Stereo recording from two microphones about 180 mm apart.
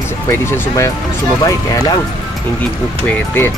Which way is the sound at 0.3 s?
15° left (ahead or behind).